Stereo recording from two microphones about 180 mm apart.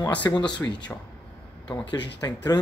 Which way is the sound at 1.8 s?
75° left (ahead or behind).